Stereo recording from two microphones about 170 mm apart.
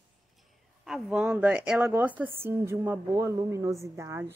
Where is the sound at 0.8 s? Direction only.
Centre (ahead or behind); by 4.2 s 15° right (ahead or behind).